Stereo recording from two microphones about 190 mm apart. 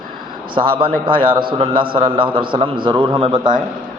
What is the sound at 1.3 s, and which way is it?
A man's voice, 25° right (ahead or behind).